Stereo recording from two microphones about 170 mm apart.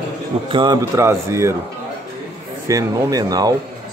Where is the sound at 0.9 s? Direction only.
15° right (ahead or behind).